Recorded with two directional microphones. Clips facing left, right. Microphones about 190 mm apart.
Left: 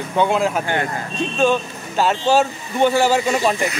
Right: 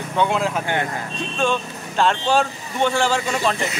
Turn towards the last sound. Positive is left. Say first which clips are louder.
# left 4 dB
turn(degrees=10)  # may be behind; listen again after turning